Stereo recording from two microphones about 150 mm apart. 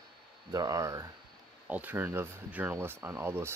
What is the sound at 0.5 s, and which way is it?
Speech, 20° right (ahead or behind).